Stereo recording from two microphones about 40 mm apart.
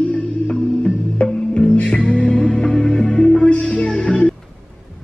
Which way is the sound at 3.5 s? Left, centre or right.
Left.